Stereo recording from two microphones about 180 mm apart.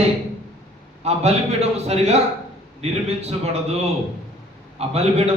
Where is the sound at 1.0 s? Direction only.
35° right (ahead or behind).